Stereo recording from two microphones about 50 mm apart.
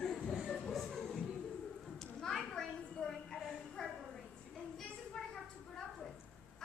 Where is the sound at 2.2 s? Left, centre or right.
Centre.